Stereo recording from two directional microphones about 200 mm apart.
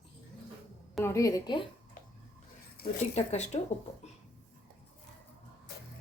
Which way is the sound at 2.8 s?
50° left (ahead or behind).